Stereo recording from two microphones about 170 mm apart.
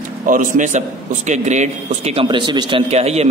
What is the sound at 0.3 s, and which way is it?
A man's voice, 50° right (ahead or behind).